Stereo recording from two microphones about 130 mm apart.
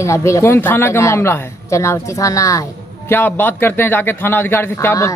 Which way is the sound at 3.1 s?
15° left (ahead or behind).